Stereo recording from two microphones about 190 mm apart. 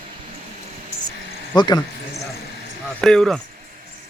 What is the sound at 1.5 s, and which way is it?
Speech, 20° left (ahead or behind).